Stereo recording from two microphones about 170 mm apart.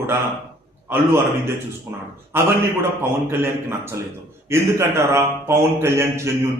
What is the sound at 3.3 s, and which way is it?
A man's voice, 15° right (ahead or behind).